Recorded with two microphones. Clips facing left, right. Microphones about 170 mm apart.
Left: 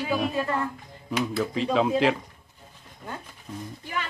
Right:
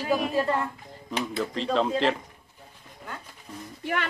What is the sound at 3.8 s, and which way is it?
Music, 65° right (ahead or behind).